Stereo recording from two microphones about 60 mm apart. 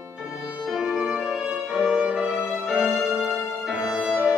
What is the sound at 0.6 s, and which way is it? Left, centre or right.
Violin, centre.